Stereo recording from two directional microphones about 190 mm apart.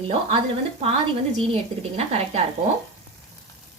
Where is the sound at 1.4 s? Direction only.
30° right (ahead or behind).